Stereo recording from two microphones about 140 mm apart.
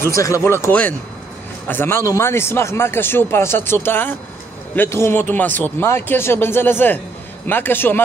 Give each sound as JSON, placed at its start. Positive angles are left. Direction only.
{"t": 0.1, "sound": "speech", "side_deg": 20}